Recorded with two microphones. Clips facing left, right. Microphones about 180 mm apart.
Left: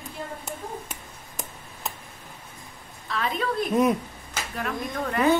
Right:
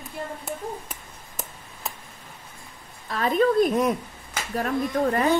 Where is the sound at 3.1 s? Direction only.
45° right (ahead or behind).